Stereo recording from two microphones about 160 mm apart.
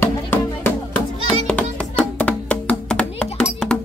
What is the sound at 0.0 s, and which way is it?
Music, 15° left (ahead or behind).